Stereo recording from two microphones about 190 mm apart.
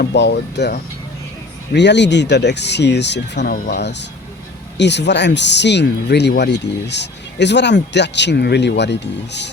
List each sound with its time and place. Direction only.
0.0 s speech: 65° left (ahead or behind)